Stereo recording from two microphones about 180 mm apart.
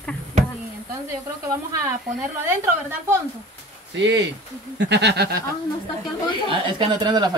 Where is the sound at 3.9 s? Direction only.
90° right.